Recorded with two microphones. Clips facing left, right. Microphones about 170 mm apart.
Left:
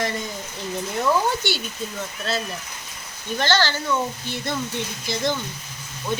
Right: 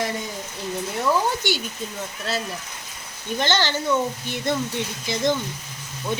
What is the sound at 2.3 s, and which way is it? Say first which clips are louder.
Speech: left 1 dB; 15° right (ahead or behind).